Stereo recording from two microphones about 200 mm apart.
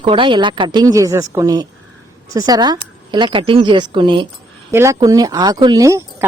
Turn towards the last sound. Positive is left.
turn(degrees=-15)  # may be behind; listen again after turning